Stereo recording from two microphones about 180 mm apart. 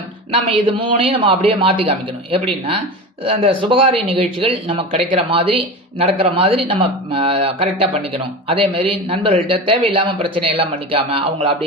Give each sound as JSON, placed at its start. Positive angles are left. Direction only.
{"t": 0.5, "sound": "speech", "side_deg": -30}